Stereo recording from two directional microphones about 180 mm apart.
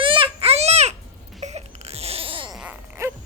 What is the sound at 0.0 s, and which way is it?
Baby cry, 30° right (ahead or behind).